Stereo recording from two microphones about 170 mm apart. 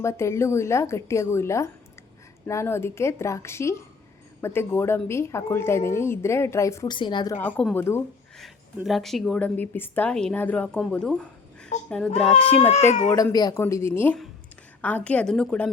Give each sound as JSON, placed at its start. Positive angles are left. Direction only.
{"t": 0.0, "sound": "a woman's voice", "side_deg": 15}
{"t": 7.4, "sound": "a woman's voice", "side_deg": 10}
{"t": 8.4, "sound": "a woman's voice", "side_deg": 0}
{"t": 12.7, "sound": "speech", "side_deg": 45}
{"t": 13.1, "sound": "a woman's voice", "side_deg": 20}